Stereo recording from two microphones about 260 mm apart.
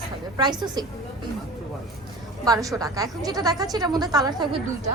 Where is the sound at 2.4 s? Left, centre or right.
Centre.